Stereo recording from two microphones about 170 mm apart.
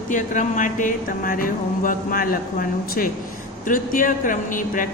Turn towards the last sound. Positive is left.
turn(degrees=55)  # may be behind; listen again after turning